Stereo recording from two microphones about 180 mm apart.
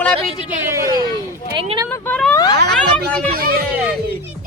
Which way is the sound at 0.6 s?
15° right (ahead or behind).